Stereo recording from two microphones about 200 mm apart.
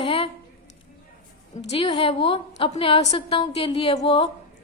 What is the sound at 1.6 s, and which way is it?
A woman's voice, 30° left (ahead or behind).